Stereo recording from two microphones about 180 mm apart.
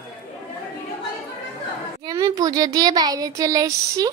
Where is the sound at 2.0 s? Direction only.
20° right (ahead or behind).